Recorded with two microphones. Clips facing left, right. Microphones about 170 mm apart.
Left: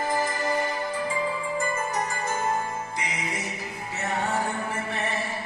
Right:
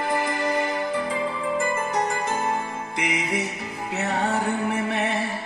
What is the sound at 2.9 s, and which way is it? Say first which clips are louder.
Music: right 6 dB; 70° right (ahead or behind).